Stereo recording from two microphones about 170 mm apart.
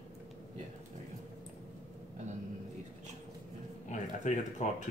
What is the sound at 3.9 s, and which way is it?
Speech, 45° left (ahead or behind).